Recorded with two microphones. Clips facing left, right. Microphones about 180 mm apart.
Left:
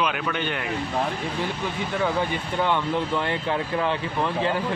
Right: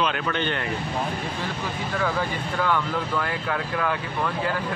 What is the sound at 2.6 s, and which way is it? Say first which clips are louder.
Speech: left 2 dB; 25° left (ahead or behind).